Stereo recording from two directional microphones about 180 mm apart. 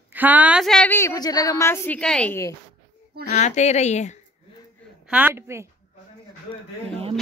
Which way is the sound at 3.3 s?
40° left (ahead or behind).